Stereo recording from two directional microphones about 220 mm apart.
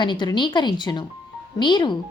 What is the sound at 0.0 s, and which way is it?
Speech, 20° left (ahead or behind).